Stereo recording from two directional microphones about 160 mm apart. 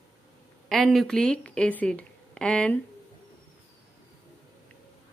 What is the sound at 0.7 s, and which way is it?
Speech, centre (ahead or behind).